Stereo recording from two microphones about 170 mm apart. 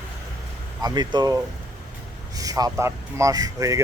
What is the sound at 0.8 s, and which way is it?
Speech, 25° right (ahead or behind).